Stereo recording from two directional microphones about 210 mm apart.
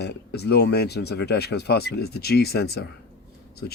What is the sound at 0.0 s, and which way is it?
Speech, 50° left (ahead or behind).